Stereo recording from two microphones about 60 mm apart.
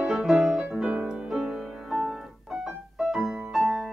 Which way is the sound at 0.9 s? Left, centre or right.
Centre.